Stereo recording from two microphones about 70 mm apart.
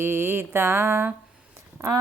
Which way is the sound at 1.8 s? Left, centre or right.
Right.